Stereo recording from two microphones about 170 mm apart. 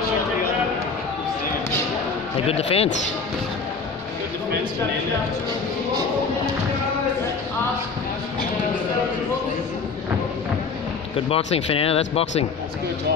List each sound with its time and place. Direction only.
2.4 s speech: 35° left (ahead or behind)
11.1 s speech: 35° left (ahead or behind)